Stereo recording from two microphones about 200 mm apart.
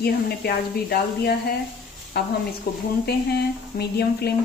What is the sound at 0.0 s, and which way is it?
Speech, 50° left (ahead or behind).